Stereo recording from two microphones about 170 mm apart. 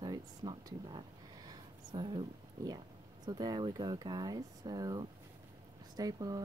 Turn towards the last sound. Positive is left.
turn(degrees=-20)  # may be behind; listen again after turning